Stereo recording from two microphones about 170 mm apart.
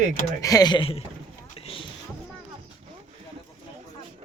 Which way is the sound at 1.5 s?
35° left (ahead or behind).